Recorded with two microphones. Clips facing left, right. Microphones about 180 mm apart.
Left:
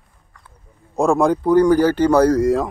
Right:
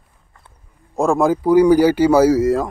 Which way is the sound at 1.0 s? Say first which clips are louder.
Even; centre (ahead or behind).